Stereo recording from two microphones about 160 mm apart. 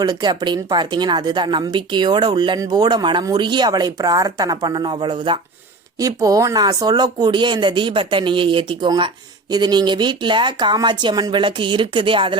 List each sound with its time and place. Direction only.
0.0 s speech: 25° right (ahead or behind)